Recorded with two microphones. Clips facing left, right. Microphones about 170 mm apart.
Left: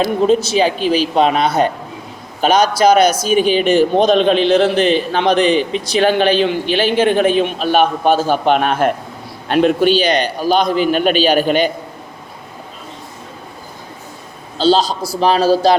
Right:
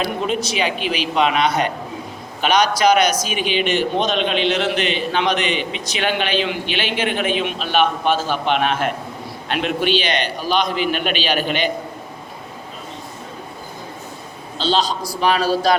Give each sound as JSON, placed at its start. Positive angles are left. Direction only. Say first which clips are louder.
{"t": 0.0, "sound": "a man's voice", "louder": "left 8 dB", "side_deg": 35}
{"t": 14.6, "sound": "a man's voice", "louder": "left 6 dB", "side_deg": 40}